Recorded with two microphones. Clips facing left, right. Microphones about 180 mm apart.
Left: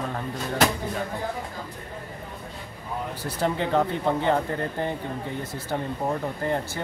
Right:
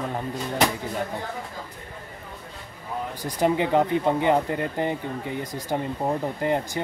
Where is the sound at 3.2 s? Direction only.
15° right (ahead or behind).